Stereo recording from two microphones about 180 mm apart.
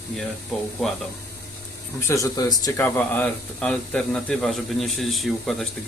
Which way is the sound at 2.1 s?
20° left (ahead or behind).